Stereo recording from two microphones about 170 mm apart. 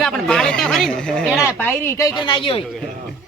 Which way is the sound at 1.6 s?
15° left (ahead or behind).